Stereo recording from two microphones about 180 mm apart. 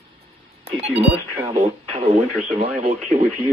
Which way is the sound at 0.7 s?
35° right (ahead or behind).